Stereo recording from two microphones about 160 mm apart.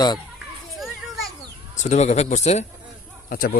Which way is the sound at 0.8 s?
Centre (ahead or behind).